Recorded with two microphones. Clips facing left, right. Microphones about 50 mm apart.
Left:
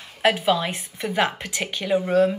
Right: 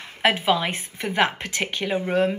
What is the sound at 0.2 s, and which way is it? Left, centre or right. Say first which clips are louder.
A woman's voice: even; right.